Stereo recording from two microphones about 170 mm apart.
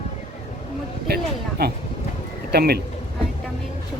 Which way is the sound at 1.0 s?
65° right (ahead or behind).